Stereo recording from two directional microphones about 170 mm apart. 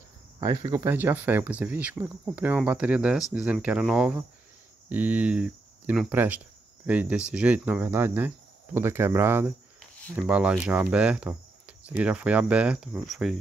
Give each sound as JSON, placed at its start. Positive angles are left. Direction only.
{"t": 0.4, "sound": "speech", "side_deg": -20}